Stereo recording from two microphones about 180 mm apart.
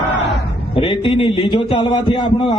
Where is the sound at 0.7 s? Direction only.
25° left (ahead or behind).